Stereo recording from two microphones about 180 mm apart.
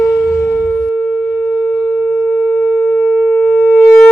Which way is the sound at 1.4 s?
15° left (ahead or behind).